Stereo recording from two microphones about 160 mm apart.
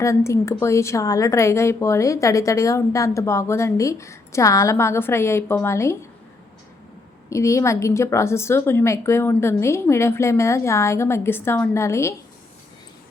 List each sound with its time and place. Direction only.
0.0 s a woman's voice: 20° left (ahead or behind)
7.3 s a woman's voice: 20° left (ahead or behind)